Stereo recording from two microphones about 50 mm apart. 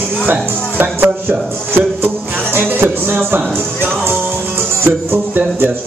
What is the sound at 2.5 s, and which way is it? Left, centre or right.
Music, right.